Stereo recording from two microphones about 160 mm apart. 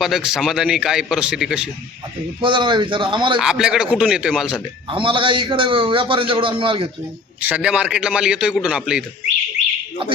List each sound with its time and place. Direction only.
0.0 s a man's voice: 5° right (ahead or behind)
2.4 s a man's voice: 30° right (ahead or behind)
3.3 s a man's voice: 5° right (ahead or behind)
4.9 s a man's voice: 30° right (ahead or behind)
7.4 s a man's voice: 10° right (ahead or behind)